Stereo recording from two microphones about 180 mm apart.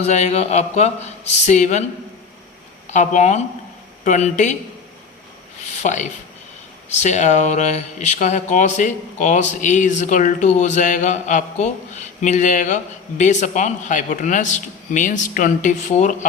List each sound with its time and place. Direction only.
0.0 s a man's voice: 40° left (ahead or behind)
2.9 s a man's voice: 40° left (ahead or behind)
5.8 s speech: 45° left (ahead or behind)